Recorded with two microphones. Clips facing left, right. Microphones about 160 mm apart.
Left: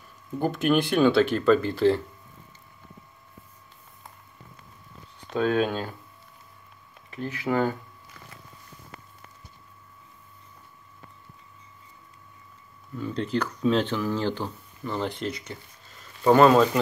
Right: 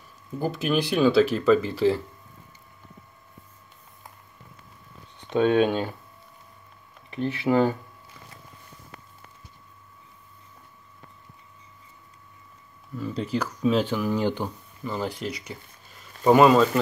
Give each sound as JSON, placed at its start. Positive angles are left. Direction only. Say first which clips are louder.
{"t": 0.4, "sound": "speech", "louder": "left 2 dB", "side_deg": 0}
{"t": 5.3, "sound": "speech", "louder": "right 4 dB", "side_deg": -25}
{"t": 7.1, "sound": "speech", "louder": "right 4 dB", "side_deg": -25}
{"t": 12.9, "sound": "speech", "louder": "even", "side_deg": -5}